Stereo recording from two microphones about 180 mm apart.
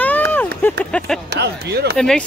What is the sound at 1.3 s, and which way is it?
Speech, 65° right (ahead or behind).